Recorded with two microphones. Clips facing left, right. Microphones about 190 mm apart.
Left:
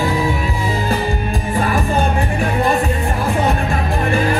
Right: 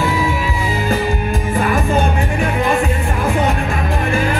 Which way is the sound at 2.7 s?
35° left (ahead or behind).